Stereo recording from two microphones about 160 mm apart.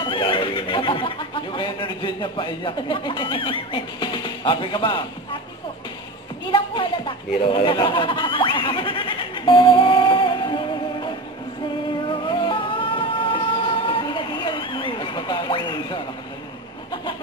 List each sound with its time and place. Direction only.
0.0 s speech: 30° left (ahead or behind)
6.5 s a sound: 30° left (ahead or behind)
12.1 s music: 30° left (ahead or behind)